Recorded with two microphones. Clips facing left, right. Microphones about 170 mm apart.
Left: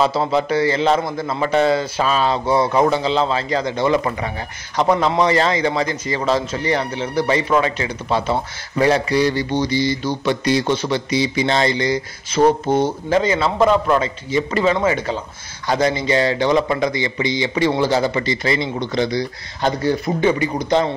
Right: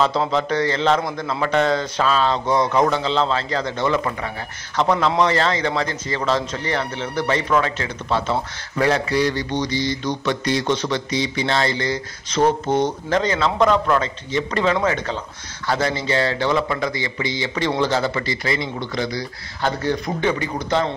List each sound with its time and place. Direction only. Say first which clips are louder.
0.0 s a man's voice: left 2 dB; 10° left (ahead or behind)
19.8 s a man's voice: left 5 dB; 10° left (ahead or behind)